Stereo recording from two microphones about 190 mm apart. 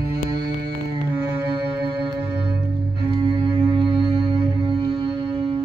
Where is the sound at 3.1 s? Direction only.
25° right (ahead or behind).